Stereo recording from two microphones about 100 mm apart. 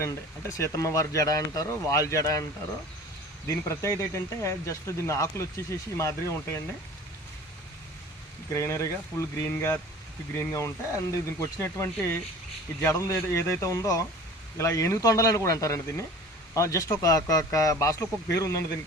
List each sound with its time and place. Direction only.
0.0 s speech: 30° left (ahead or behind)
3.4 s speech: 30° left (ahead or behind)
8.5 s speech: 30° left (ahead or behind)